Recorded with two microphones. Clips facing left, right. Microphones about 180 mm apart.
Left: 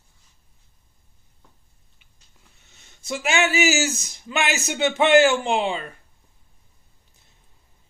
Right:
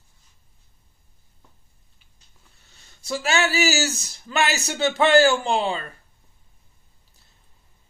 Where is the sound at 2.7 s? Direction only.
20° left (ahead or behind).